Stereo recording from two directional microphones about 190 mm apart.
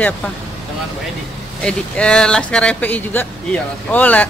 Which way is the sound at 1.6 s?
5° left (ahead or behind).